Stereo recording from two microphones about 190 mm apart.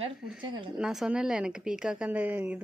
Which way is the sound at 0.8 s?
5° right (ahead or behind).